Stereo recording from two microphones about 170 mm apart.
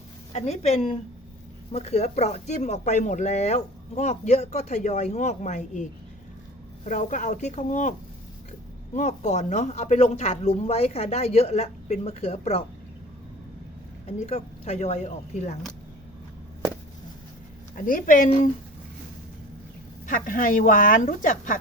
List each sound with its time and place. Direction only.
0.3 s speech: 40° left (ahead or behind)
9.0 s speech: 45° left (ahead or behind)
14.2 s speech: 40° left (ahead or behind)
17.7 s speech: 55° left (ahead or behind)
20.1 s speech: 50° left (ahead or behind)